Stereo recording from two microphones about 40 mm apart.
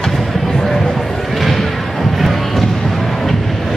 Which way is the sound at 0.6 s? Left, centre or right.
Centre.